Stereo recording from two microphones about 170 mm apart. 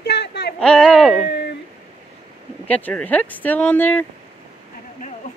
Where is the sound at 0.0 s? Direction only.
75° left (ahead or behind).